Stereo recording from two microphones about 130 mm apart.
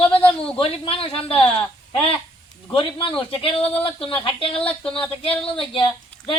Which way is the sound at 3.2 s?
45° left (ahead or behind).